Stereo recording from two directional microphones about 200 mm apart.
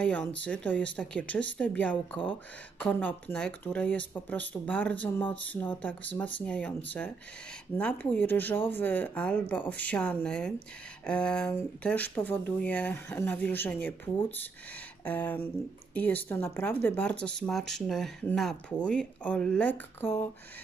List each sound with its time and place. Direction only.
0.0 s speech: 5° left (ahead or behind)
7.7 s speech: 10° left (ahead or behind)
15.0 s speech: 10° left (ahead or behind)